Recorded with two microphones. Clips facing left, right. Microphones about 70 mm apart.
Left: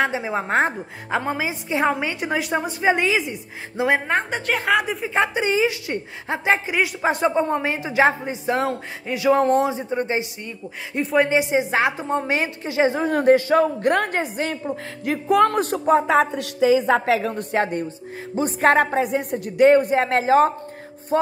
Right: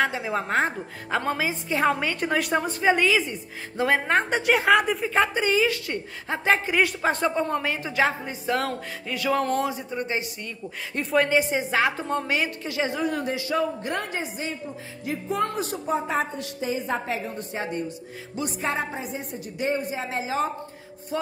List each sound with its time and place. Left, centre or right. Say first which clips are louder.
0.0 s speech: left 3 dB; left; by 2.7 s centre
2.8 s a woman's voice: left 2 dB; left
4.1 s a woman's voice: right 1 dB; centre
5.1 s speech: left 2 dB; left
6.6 s a woman's voice: left 1 dB; centre; by 13.1 s left
13.1 s a woman's voice: left 11 dB; left
15.8 s a woman's voice: left 9 dB; left
17.3 s a woman's voice: left 8 dB; left
21.1 s music: left 9 dB; left